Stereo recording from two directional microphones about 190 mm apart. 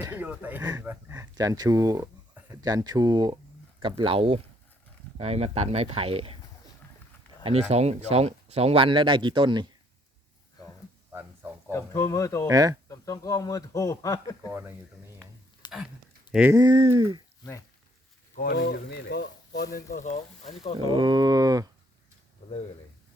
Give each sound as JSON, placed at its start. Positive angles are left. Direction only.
{"t": 0.0, "sound": "speech", "side_deg": -10}
{"t": 0.6, "sound": "speech", "side_deg": -20}
{"t": 7.7, "sound": "speech", "side_deg": -35}
{"t": 11.1, "sound": "a sound", "side_deg": -10}
{"t": 11.7, "sound": "speech", "side_deg": 15}
{"t": 12.5, "sound": "speech", "side_deg": -20}
{"t": 12.9, "sound": "speech", "side_deg": 15}
{"t": 15.6, "sound": "a sound", "side_deg": 20}
{"t": 16.3, "sound": "speech", "side_deg": -10}
{"t": 16.6, "sound": "speech", "side_deg": -25}
{"t": 18.3, "sound": "speech", "side_deg": 55}
{"t": 19.7, "sound": "speech", "side_deg": 45}
{"t": 20.7, "sound": "speech", "side_deg": -25}